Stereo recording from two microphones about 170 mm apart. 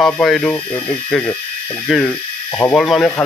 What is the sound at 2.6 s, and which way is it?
Speech, 15° left (ahead or behind).